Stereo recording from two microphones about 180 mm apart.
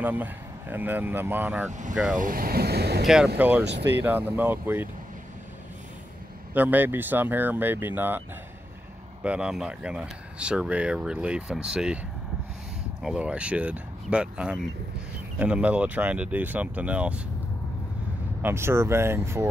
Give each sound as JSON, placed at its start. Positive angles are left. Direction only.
{"t": 0.0, "sound": "speech", "side_deg": -10}
{"t": 1.7, "sound": "speech", "side_deg": -45}
{"t": 3.3, "sound": "speech", "side_deg": -10}
{"t": 3.6, "sound": "speech", "side_deg": -70}
{"t": 3.9, "sound": "speech", "side_deg": -10}
{"t": 6.5, "sound": "speech", "side_deg": -10}
{"t": 9.2, "sound": "speech", "side_deg": -5}
{"t": 13.0, "sound": "speech", "side_deg": -5}
{"t": 18.4, "sound": "speech", "side_deg": -15}